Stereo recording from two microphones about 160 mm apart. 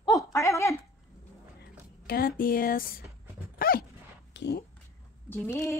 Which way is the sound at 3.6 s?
65° left (ahead or behind).